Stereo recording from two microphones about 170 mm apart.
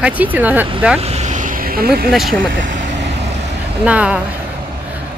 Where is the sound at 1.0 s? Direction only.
40° right (ahead or behind); by 2.0 s 60° right (ahead or behind).